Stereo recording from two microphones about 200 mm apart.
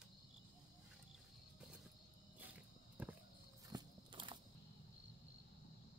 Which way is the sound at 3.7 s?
25° right (ahead or behind).